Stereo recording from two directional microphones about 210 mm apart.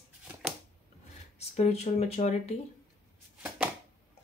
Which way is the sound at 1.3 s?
30° left (ahead or behind).